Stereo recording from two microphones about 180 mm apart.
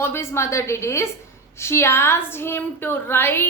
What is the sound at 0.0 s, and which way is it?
A woman's voice, 15° left (ahead or behind).